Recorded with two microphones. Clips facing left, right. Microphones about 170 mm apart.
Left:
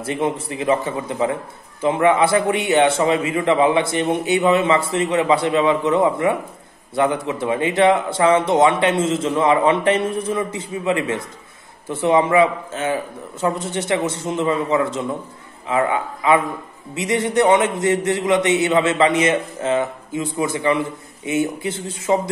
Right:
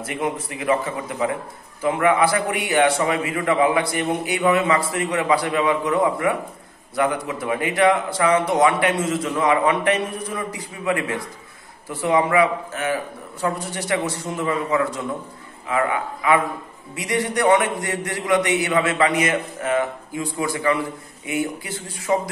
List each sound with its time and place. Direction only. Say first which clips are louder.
0.0 s a man's voice: left 4 dB; 30° left (ahead or behind)